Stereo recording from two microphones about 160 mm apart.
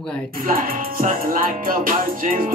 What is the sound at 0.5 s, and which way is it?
Music, 60° right (ahead or behind).